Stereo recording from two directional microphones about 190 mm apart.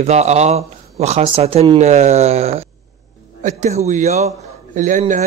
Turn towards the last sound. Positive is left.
turn(degrees=-40)  # may be behind; listen again after turning